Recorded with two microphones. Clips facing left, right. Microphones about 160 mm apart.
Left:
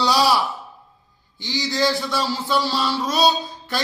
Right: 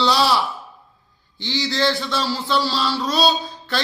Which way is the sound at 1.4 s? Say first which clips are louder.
Even; 10° left (ahead or behind).